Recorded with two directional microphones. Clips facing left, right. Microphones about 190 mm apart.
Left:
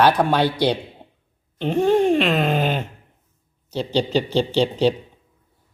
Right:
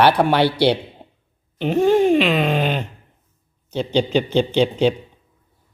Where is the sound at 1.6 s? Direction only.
5° right (ahead or behind).